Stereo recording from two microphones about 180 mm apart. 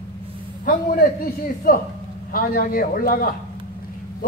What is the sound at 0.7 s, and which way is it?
A man's voice, 55° left (ahead or behind).